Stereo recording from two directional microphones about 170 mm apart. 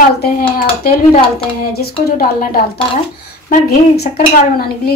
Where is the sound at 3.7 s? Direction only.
65° left (ahead or behind).